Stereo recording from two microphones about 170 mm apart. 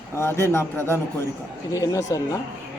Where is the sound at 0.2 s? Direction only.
15° left (ahead or behind).